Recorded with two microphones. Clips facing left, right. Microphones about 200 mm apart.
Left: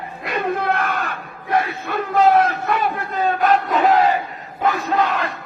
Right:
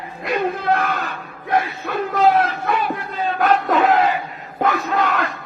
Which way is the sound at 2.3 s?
50° left (ahead or behind).